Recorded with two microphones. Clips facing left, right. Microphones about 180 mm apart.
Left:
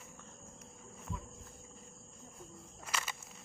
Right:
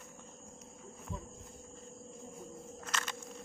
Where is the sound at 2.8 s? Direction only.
10° left (ahead or behind).